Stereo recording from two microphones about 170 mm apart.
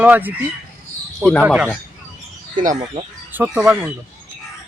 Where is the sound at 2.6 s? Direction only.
50° right (ahead or behind).